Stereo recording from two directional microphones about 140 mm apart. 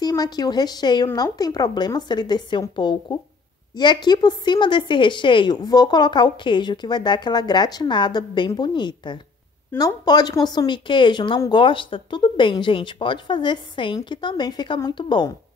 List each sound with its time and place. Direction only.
0.0 s a woman's voice: 30° left (ahead or behind)